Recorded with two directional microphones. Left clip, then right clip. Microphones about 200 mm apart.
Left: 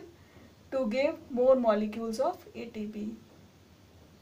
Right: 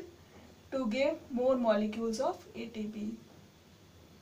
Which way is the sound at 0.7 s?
50° left (ahead or behind).